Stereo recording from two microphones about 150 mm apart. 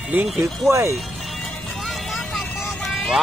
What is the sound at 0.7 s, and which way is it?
Speech, 20° right (ahead or behind).